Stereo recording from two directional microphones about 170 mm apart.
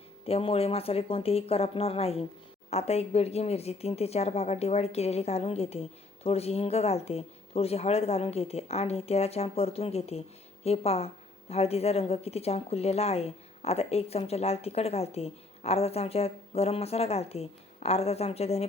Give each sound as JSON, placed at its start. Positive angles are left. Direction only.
{"t": 0.3, "sound": "speech", "side_deg": 35}